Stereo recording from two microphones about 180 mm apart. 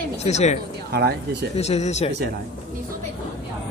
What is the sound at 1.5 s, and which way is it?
Speech, 35° left (ahead or behind).